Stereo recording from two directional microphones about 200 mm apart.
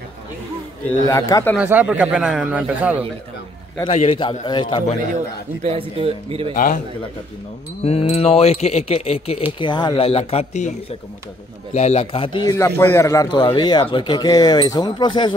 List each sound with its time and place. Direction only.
1.0 s speech: 15° left (ahead or behind)
1.6 s a man's voice: 10° right (ahead or behind)
3.9 s a man's voice: 30° left (ahead or behind)
5.1 s a man's voice: 35° right (ahead or behind)
6.5 s a man's voice: 40° left (ahead or behind)
7.8 s a man's voice: 30° left (ahead or behind)
11.7 s a man's voice: 30° left (ahead or behind)